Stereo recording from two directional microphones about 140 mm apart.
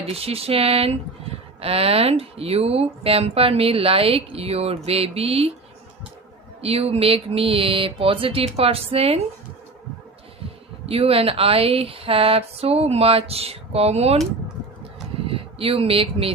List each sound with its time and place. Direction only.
0.1 s speech: 45° right (ahead or behind)
6.6 s speech: 45° right (ahead or behind)
10.8 s speech: 45° right (ahead or behind)
15.3 s speech: 40° right (ahead or behind)